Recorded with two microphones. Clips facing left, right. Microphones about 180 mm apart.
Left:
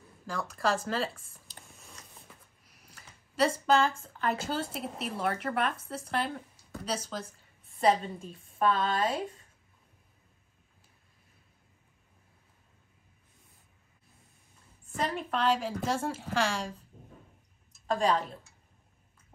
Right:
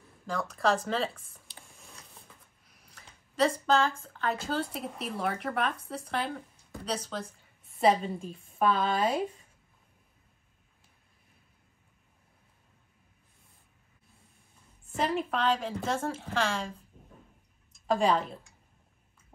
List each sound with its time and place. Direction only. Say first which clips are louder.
0.3 s a woman's voice: right 2 dB; 5° left (ahead or behind)
1.5 s a sound: even; 40° left (ahead or behind)
3.3 s a woman's voice: even; 5° left (ahead or behind)
15.0 s a woman's voice: right 2 dB; centre (ahead or behind)
17.7 s a woman's voice: right 2 dB; 5° right (ahead or behind)